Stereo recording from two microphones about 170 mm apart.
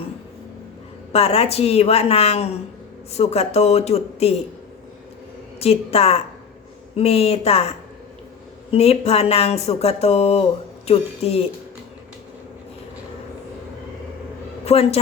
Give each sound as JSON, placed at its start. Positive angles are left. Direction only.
{"t": 1.1, "sound": "speech", "side_deg": 35}
{"t": 5.5, "sound": "speech", "side_deg": 35}
{"t": 14.6, "sound": "a man's voice", "side_deg": 35}